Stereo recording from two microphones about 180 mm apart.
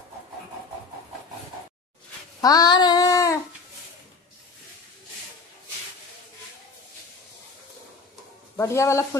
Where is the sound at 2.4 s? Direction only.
20° left (ahead or behind).